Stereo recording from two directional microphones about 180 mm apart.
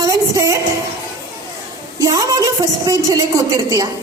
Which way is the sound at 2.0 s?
20° right (ahead or behind).